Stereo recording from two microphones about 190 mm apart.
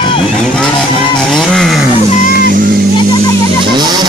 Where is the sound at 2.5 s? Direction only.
50° right (ahead or behind).